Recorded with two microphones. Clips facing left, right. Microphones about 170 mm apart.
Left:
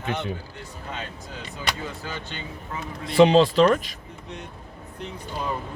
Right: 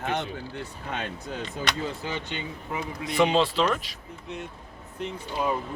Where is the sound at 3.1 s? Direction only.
35° left (ahead or behind).